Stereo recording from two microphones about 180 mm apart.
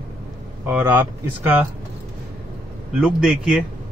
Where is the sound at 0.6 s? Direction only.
10° right (ahead or behind).